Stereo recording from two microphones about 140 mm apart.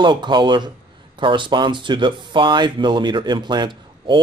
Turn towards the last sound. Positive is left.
turn(degrees=-35)  # may be behind; listen again after turning